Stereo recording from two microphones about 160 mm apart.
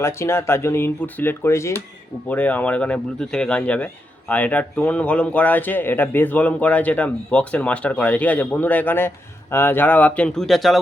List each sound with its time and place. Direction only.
0.0 s speech: 15° left (ahead or behind)